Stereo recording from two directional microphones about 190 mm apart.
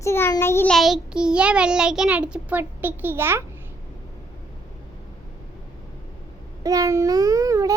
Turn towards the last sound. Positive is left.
turn(degrees=-15)  # may be behind; listen again after turning